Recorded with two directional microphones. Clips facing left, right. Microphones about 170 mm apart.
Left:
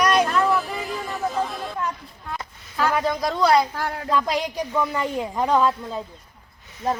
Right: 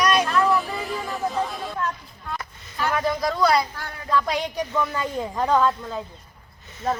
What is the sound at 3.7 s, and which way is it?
Speech, 90° left.